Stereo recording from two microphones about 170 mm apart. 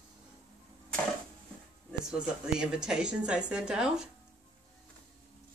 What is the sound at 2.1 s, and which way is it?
Speech, 5° right (ahead or behind).